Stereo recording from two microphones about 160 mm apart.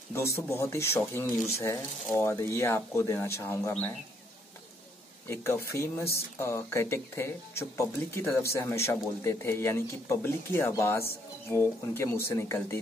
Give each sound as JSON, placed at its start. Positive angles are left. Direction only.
{"t": 0.1, "sound": "speech", "side_deg": 15}
{"t": 5.3, "sound": "speech", "side_deg": 15}